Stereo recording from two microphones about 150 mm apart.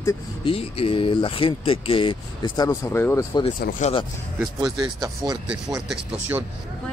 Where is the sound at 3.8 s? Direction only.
55° left (ahead or behind).